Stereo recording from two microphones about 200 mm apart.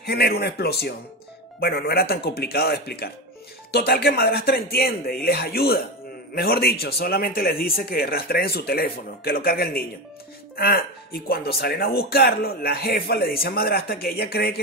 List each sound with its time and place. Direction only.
0.0 s speech: 50° left (ahead or behind)